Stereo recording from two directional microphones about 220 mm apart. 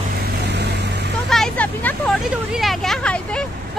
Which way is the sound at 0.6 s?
50° right (ahead or behind).